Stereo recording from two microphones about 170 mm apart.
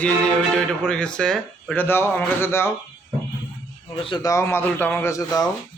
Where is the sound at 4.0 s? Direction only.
25° left (ahead or behind).